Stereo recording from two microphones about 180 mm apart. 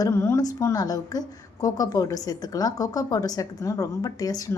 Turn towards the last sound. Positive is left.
turn(degrees=20)  # may be behind; listen again after turning